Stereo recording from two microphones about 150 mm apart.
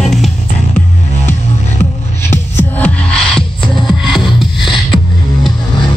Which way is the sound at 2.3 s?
15° left (ahead or behind).